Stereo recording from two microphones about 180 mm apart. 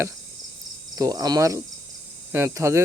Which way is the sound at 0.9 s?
20° right (ahead or behind).